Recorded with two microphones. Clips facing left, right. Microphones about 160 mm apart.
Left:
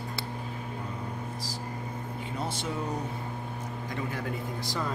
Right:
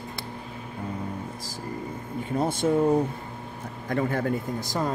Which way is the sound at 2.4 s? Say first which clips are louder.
Right 9 dB; 50° right (ahead or behind).